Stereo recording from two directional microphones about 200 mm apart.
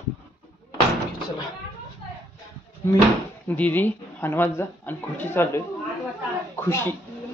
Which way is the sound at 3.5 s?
10° left (ahead or behind).